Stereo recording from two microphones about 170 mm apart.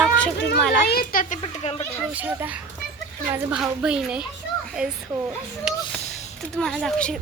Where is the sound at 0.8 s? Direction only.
60° left (ahead or behind).